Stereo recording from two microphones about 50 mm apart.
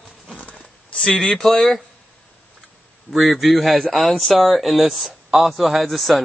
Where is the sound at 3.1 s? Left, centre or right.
Centre.